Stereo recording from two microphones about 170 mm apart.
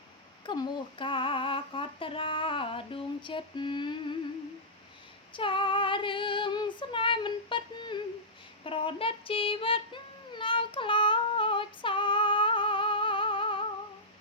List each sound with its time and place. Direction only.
0.4 s female singing: 25° left (ahead or behind)
5.3 s female singing: 30° left (ahead or behind)
8.6 s child singing: 30° left (ahead or behind)